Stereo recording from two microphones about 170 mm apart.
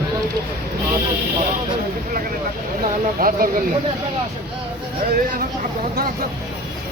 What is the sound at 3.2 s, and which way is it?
Speech, 55° right (ahead or behind).